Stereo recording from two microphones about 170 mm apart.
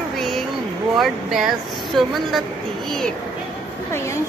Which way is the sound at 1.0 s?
Centre (ahead or behind).